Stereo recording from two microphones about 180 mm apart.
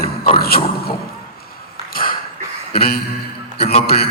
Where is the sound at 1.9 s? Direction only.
55° left (ahead or behind).